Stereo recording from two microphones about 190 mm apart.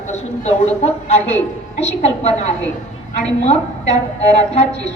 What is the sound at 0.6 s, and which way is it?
A woman's voice, 35° left (ahead or behind).